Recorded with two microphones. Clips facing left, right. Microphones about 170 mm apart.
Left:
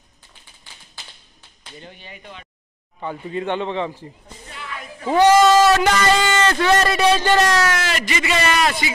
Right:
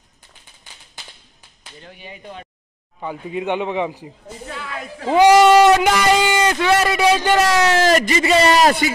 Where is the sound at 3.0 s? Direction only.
10° right (ahead or behind).